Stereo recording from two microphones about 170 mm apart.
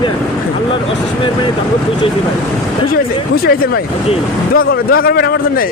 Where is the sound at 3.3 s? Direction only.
60° left (ahead or behind).